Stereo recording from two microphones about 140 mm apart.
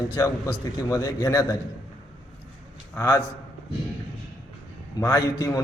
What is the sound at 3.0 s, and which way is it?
Speech, 25° left (ahead or behind).